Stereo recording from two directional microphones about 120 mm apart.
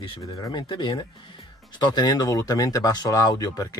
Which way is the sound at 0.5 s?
45° left (ahead or behind).